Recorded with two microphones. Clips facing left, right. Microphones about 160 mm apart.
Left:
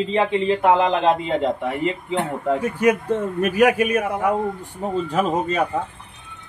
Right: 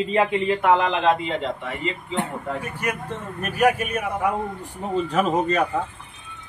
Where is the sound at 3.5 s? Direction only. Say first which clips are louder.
Left 2 dB; 90° left.